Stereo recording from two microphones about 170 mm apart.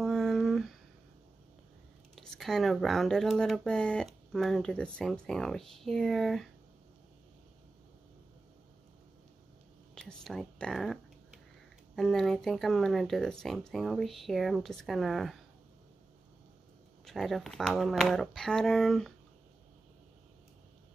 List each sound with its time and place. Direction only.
0.0 s a sound: centre (ahead or behind)
2.1 s speech: centre (ahead or behind)
9.9 s speech: centre (ahead or behind)
17.0 s speech: centre (ahead or behind)